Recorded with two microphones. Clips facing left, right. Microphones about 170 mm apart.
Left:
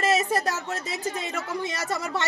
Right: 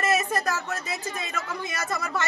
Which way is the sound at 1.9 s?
30° left (ahead or behind).